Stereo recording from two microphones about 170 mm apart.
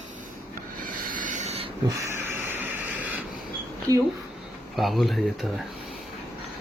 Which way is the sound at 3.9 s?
20° right (ahead or behind).